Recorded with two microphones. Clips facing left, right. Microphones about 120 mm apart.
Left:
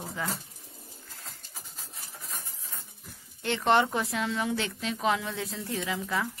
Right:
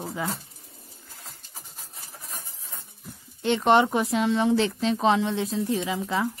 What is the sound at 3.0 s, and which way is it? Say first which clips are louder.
Speech: right 7 dB; 20° right (ahead or behind).